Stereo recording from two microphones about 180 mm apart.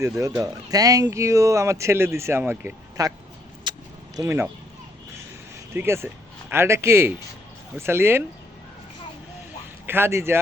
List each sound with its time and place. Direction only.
0.2 s speech: 20° right (ahead or behind)
3.6 s vehicle: 20° right (ahead or behind)
5.7 s speech: 15° right (ahead or behind)
9.8 s speech: 10° right (ahead or behind)